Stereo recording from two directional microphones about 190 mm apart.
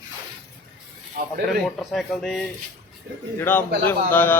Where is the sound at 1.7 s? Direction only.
5° left (ahead or behind).